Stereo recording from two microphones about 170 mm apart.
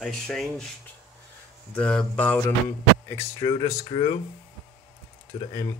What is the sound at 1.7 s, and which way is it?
Speech, 5° left (ahead or behind).